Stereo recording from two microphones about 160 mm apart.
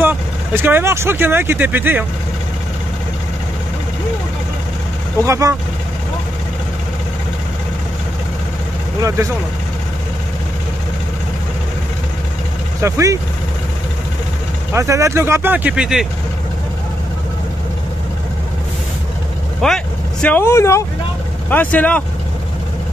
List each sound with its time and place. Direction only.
0.0 s speech: 10° right (ahead or behind)
5.2 s speech: 20° right (ahead or behind)
12.8 s speech: 20° right (ahead or behind)
14.7 s speech: 20° right (ahead or behind); by 16.1 s 5° right (ahead or behind)
19.6 s speech: 5° left (ahead or behind)